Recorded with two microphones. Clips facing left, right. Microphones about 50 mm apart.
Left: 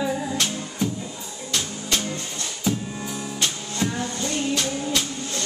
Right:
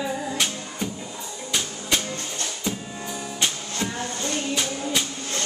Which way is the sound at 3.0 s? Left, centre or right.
Centre.